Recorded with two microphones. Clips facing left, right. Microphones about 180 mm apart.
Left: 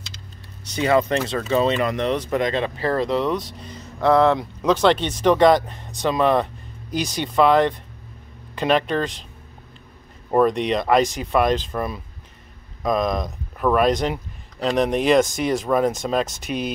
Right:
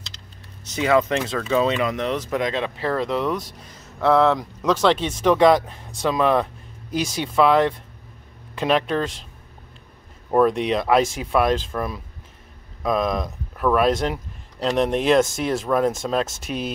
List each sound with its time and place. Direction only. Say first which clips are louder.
0.7 s speech: even; centre (ahead or behind)
10.3 s speech: even; 5° right (ahead or behind)